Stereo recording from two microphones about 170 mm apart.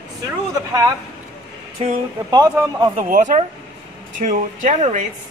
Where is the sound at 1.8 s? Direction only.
40° right (ahead or behind).